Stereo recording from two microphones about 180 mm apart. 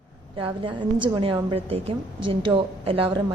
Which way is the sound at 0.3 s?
30° right (ahead or behind).